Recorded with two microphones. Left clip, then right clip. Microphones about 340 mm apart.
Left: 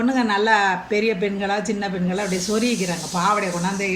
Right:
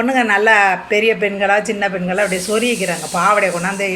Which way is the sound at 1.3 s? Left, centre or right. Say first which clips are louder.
Right 8 dB; right.